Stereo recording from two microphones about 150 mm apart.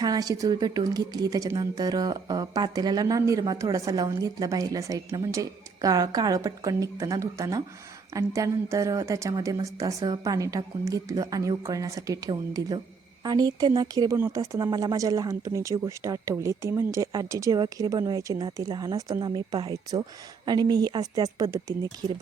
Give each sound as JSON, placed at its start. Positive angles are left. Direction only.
{"t": 0.0, "sound": "speech", "side_deg": -25}